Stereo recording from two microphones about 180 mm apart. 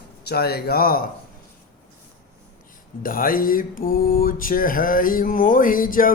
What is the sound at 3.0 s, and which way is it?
Mantra, 50° left (ahead or behind).